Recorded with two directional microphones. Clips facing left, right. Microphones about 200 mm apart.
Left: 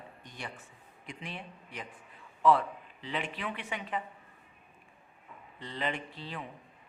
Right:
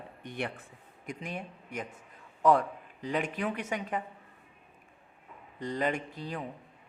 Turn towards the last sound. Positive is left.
turn(degrees=-45)  # may be behind; listen again after turning